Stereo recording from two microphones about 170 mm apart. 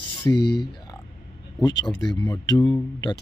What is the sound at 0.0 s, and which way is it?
Speech, 75° left (ahead or behind).